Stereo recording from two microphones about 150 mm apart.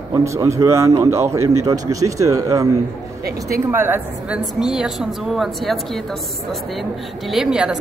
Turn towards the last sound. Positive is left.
turn(degrees=-5)  # may be behind; listen again after turning